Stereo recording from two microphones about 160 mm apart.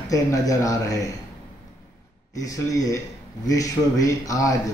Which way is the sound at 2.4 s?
20° left (ahead or behind).